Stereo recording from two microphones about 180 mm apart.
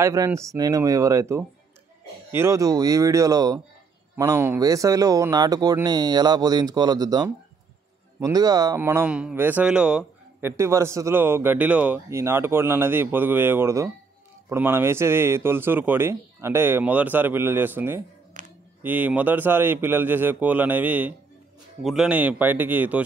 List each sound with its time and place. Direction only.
0.0 s speech: 15° right (ahead or behind)
18.4 s a sound: 45° right (ahead or behind)
18.8 s speech: 10° right (ahead or behind)